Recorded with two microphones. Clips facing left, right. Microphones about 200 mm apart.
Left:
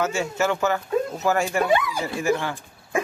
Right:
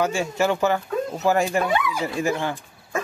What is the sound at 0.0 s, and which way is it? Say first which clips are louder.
Speech: right 1 dB; 15° right (ahead or behind).